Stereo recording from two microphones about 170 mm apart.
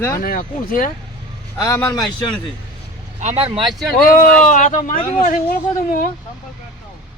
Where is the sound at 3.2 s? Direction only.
40° right (ahead or behind).